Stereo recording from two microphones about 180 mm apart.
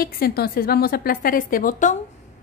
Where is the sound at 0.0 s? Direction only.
60° left (ahead or behind).